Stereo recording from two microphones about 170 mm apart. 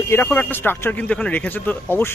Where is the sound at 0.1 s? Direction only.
10° left (ahead or behind).